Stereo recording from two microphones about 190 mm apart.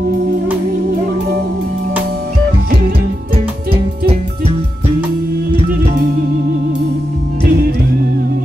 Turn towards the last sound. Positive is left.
turn(degrees=-55)  # may be behind; listen again after turning